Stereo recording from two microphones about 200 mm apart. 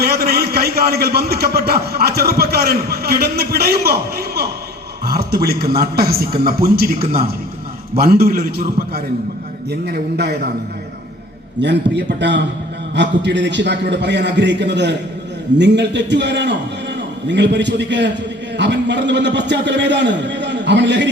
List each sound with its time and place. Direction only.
0.0 s a man's voice: 50° right (ahead or behind)
7.9 s a man's voice: 50° right (ahead or behind)
11.6 s a man's voice: 60° right (ahead or behind)